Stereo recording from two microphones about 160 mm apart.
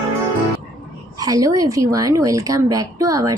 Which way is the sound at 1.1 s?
20° right (ahead or behind).